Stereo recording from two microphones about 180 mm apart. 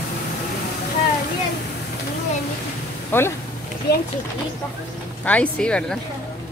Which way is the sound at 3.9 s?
65° left (ahead or behind).